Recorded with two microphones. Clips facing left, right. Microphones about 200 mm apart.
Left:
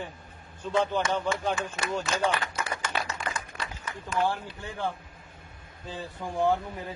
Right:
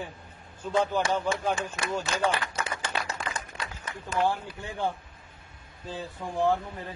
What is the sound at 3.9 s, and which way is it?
Speech, 35° right (ahead or behind).